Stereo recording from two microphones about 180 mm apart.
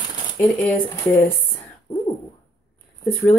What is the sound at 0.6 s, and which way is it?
Speech, 10° left (ahead or behind).